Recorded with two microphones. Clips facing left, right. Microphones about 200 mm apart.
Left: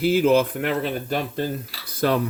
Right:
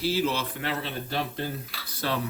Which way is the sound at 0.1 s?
50° left (ahead or behind).